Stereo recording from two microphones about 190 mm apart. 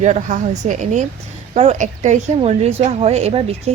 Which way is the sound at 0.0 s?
40° right (ahead or behind).